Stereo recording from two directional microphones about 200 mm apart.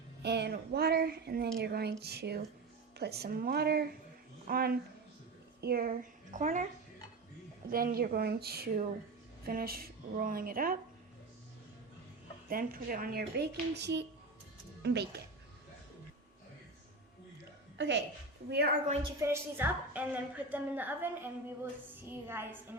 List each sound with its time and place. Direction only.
0.2 s a woman's voice: 55° right (ahead or behind); by 6.7 s 40° right (ahead or behind)
7.7 s speech: 45° right (ahead or behind)
12.5 s a woman's voice: 45° right (ahead or behind)
17.7 s a woman's voice: 60° right (ahead or behind)
19.2 s a woman's voice: 10° right (ahead or behind)